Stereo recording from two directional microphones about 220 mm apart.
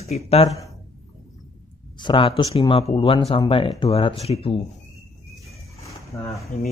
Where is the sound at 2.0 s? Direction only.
20° left (ahead or behind).